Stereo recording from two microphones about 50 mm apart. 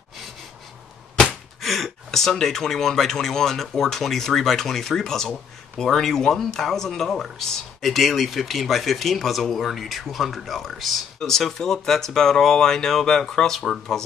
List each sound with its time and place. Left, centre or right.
1.2 s speech: centre